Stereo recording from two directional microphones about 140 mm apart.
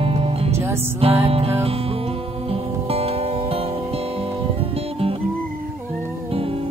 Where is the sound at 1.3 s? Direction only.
45° right (ahead or behind).